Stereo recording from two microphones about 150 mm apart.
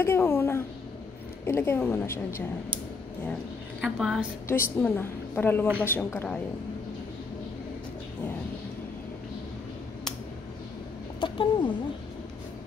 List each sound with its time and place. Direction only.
0.0 s a woman's voice: 15° left (ahead or behind)
3.8 s a woman's voice: 5° right (ahead or behind)
4.5 s a woman's voice: 15° left (ahead or behind)
11.1 s speech: 35° left (ahead or behind)